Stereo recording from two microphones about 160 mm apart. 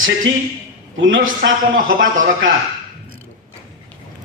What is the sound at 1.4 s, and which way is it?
A man's voice, 60° right (ahead or behind).